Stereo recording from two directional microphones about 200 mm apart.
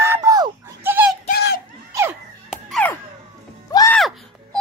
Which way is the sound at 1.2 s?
50° left (ahead or behind).